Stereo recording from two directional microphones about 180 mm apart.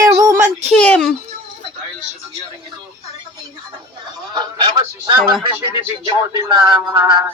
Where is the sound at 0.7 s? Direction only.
5° left (ahead or behind).